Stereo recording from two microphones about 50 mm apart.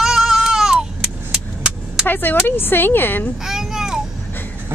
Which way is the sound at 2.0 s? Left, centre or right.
Left.